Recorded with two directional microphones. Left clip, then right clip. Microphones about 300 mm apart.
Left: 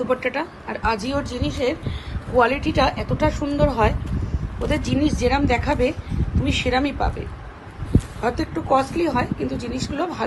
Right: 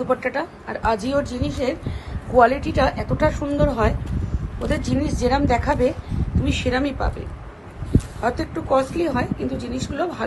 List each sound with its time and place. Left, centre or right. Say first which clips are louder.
0.1 s speech: even; centre
8.2 s speech: even; centre